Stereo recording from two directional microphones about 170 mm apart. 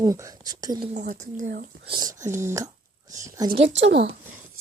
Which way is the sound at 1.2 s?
45° right (ahead or behind).